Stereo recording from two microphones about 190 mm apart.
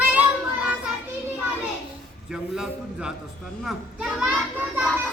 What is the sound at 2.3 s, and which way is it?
A man's voice, 5° right (ahead or behind).